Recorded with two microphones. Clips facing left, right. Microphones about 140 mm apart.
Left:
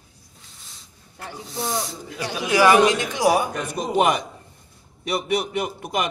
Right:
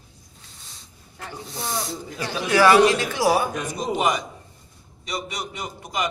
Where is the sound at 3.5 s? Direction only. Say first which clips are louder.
Left 2 dB; 60° left (ahead or behind).